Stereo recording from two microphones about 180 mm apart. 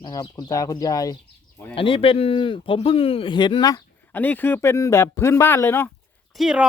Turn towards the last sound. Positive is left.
turn(degrees=-5)  # may be behind; listen again after turning